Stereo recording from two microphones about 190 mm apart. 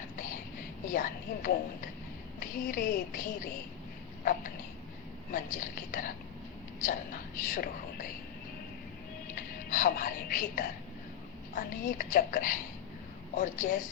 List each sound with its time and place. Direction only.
0.9 s speech: 45° left (ahead or behind)
5.3 s speech: 45° left (ahead or behind)
9.3 s speech: 45° left (ahead or behind)